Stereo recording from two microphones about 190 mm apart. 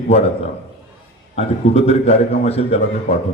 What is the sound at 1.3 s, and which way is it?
A man's voice, 35° left (ahead or behind).